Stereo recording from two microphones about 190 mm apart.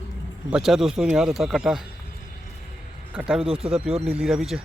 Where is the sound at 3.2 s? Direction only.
5° right (ahead or behind).